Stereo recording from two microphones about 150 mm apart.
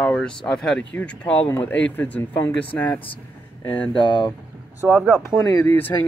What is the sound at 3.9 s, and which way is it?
Speech, 30° left (ahead or behind).